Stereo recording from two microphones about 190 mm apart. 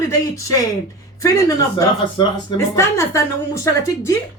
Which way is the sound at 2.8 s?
15° left (ahead or behind).